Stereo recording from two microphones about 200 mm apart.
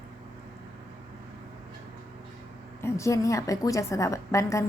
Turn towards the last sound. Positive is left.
turn(degrees=15)  # may be behind; listen again after turning